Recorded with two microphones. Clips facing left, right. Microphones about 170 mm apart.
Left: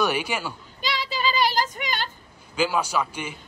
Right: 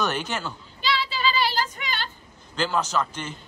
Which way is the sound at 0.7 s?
45° left (ahead or behind).